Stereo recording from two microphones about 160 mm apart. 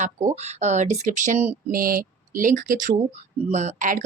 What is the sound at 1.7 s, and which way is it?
Speech, 65° right (ahead or behind).